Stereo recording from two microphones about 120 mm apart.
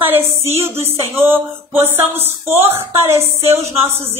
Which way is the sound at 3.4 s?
55° right (ahead or behind).